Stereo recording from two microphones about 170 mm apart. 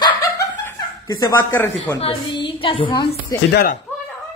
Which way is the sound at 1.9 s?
30° left (ahead or behind).